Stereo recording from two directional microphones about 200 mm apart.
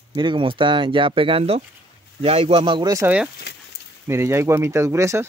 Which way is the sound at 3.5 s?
55° left (ahead or behind).